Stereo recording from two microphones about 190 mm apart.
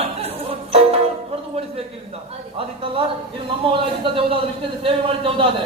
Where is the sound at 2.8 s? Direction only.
30° right (ahead or behind).